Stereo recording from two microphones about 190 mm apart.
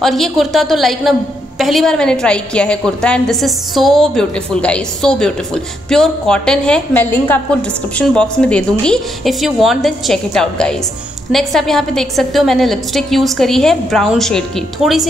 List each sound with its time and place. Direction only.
0.0 s a woman's voice: centre (ahead or behind)